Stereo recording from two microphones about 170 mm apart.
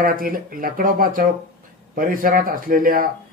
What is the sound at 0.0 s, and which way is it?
Speech, 55° right (ahead or behind).